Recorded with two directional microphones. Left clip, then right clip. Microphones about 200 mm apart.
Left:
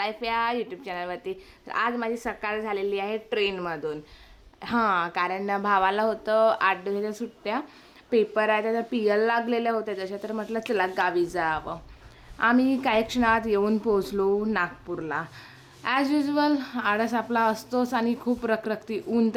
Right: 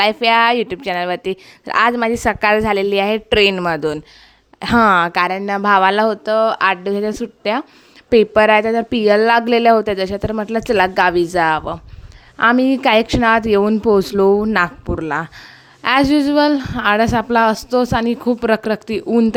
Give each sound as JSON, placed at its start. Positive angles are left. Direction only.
{"t": 0.0, "sound": "a woman's voice", "side_deg": -45}